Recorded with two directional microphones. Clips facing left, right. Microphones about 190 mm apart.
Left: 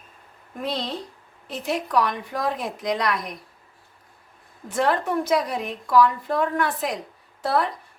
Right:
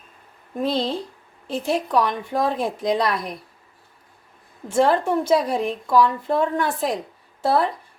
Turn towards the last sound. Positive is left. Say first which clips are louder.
# right 3 dB
turn(degrees=-30)  # may be behind; listen again after turning